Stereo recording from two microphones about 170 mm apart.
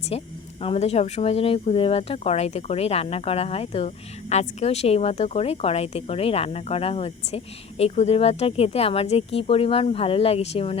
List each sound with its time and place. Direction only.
0.1 s speech: 35° left (ahead or behind)